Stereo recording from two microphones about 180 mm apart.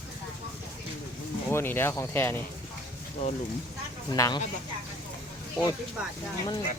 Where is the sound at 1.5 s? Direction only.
15° left (ahead or behind).